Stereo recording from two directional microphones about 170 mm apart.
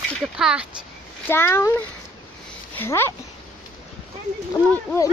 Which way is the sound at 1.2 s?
15° left (ahead or behind).